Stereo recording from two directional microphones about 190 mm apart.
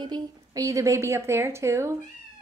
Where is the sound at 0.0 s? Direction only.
20° right (ahead or behind).